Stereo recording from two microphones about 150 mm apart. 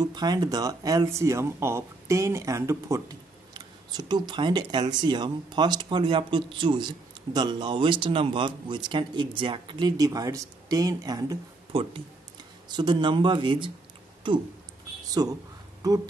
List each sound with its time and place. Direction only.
0.0 s speech: 25° right (ahead or behind)
11.7 s speech: 35° right (ahead or behind)
15.0 s speech: 25° right (ahead or behind)